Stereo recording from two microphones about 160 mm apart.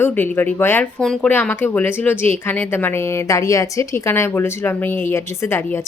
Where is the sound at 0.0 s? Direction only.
15° left (ahead or behind).